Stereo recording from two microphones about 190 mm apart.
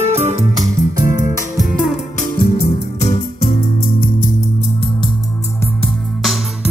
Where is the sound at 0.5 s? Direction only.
15° right (ahead or behind).